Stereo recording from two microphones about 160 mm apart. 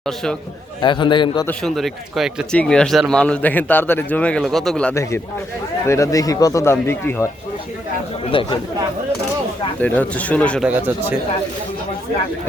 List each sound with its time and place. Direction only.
0.8 s speech: 30° left (ahead or behind)
1.5 s a man's voice: centre (ahead or behind)
5.8 s speech: 20° left (ahead or behind)
8.3 s speech: 35° left (ahead or behind)
9.8 s a man's voice: 10° left (ahead or behind)
10.6 s speech: 10° right (ahead or behind)